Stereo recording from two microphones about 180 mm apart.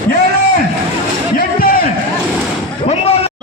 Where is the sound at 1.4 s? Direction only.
55° left (ahead or behind).